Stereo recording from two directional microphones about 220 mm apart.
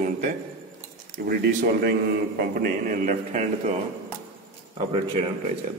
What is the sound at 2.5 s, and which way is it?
Speech, 35° right (ahead or behind).